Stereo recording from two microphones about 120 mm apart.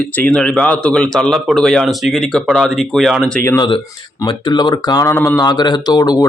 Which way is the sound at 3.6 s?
45° left (ahead or behind).